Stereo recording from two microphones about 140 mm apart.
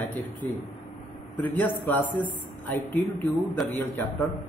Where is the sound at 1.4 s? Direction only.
15° left (ahead or behind).